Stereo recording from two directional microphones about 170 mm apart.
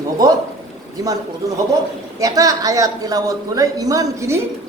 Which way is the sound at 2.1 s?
20° right (ahead or behind).